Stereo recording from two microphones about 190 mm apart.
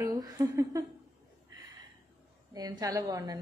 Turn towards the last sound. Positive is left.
turn(degrees=-20)  # may be behind; listen again after turning